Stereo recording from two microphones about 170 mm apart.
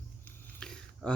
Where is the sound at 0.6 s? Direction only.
5° left (ahead or behind).